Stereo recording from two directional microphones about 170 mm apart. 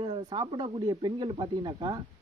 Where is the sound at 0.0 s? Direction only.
30° right (ahead or behind).